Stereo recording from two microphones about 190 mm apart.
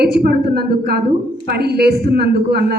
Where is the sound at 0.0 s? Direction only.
55° right (ahead or behind).